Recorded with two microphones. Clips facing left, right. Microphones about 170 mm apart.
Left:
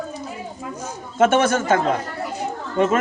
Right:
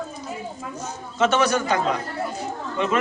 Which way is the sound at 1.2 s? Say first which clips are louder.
Left 3 dB; 50° left (ahead or behind).